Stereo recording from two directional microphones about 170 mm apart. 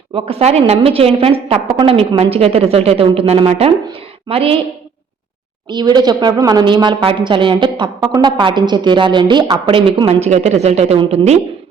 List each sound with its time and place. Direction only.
0.1 s a woman's voice: 35° right (ahead or behind)
5.6 s a woman's voice: 25° right (ahead or behind)